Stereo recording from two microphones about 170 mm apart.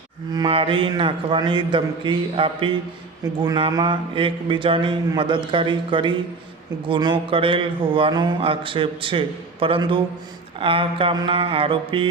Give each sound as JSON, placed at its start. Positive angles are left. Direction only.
{"t": 0.3, "sound": "mantra", "side_deg": -30}
{"t": 6.8, "sound": "a man's voice", "side_deg": -30}